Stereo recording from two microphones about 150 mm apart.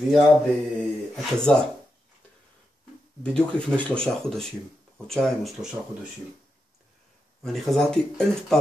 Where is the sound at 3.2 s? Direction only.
5° left (ahead or behind).